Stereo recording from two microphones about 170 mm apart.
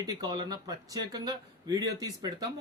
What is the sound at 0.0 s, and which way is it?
Speech, 25° right (ahead or behind).